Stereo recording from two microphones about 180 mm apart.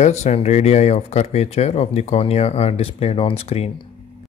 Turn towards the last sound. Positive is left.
turn(degrees=35)  # may be behind; listen again after turning